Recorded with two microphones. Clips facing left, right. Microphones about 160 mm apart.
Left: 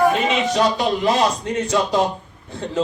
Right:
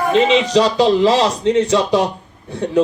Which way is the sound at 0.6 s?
90° right.